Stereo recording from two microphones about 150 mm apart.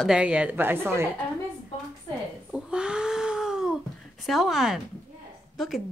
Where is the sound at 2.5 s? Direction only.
5° right (ahead or behind).